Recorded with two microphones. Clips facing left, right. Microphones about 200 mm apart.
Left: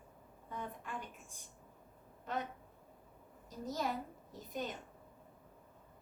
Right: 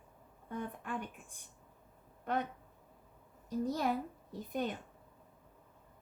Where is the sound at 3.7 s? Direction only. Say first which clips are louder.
Right 1 dB; 60° right (ahead or behind).